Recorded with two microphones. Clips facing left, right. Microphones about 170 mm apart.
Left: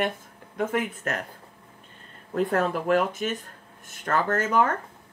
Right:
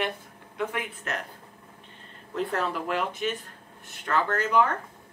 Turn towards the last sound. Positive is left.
turn(degrees=45)  # may be behind; listen again after turning